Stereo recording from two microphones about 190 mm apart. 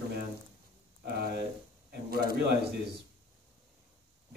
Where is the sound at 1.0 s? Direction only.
55° right (ahead or behind).